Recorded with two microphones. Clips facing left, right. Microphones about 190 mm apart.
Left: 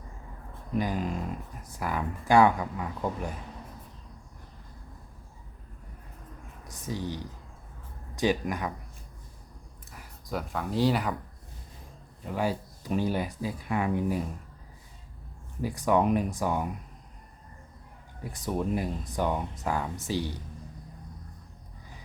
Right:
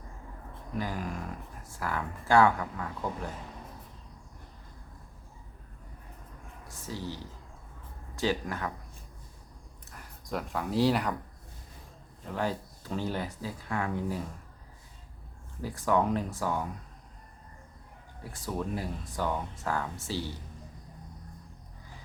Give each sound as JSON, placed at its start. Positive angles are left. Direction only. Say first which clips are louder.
{"t": 0.7, "sound": "speech", "louder": "left 5 dB", "side_deg": 20}
{"t": 6.7, "sound": "a sound", "louder": "left 4 dB", "side_deg": 15}
{"t": 8.1, "sound": "speech", "louder": "left 3 dB", "side_deg": 15}
{"t": 9.9, "sound": "speech", "louder": "left 1 dB", "side_deg": 5}
{"t": 12.3, "sound": "speech", "louder": "left 3 dB", "side_deg": 10}
{"t": 15.6, "sound": "speech", "louder": "left 3 dB", "side_deg": 15}
{"t": 18.2, "sound": "speech", "louder": "left 4 dB", "side_deg": 20}